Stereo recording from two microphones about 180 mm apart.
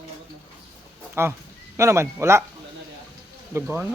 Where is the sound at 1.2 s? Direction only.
15° right (ahead or behind).